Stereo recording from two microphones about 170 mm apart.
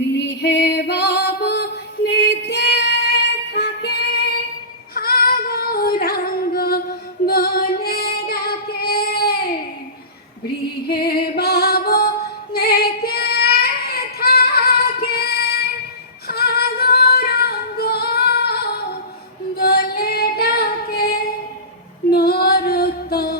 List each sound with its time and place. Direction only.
0.2 s female singing: 85° left
4.9 s female singing: 60° left (ahead or behind)
10.8 s music: 65° left (ahead or behind)
15.0 s female singing: 65° left (ahead or behind)
16.2 s music: 65° left (ahead or behind)
19.5 s female singing: 65° left (ahead or behind)